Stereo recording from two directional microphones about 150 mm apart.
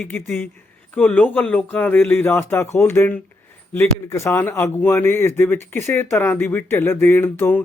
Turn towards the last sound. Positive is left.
turn(degrees=15)  # may be behind; listen again after turning